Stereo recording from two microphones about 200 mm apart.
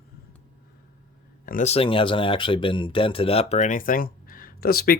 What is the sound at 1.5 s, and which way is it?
Speech, 35° left (ahead or behind).